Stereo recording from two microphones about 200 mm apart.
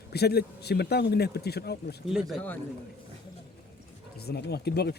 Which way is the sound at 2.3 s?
5° left (ahead or behind).